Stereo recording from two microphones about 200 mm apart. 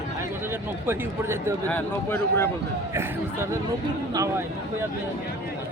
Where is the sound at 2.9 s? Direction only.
15° right (ahead or behind).